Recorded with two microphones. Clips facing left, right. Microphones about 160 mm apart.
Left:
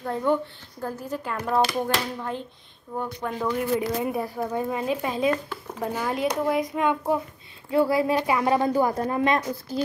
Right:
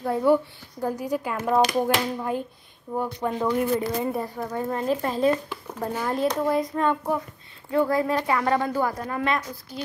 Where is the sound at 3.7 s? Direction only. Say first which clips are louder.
Even; 10° left (ahead or behind).